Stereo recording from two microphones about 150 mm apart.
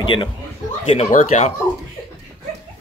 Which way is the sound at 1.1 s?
65° left (ahead or behind).